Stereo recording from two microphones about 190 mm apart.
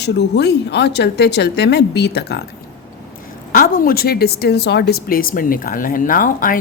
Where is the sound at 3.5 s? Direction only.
50° left (ahead or behind).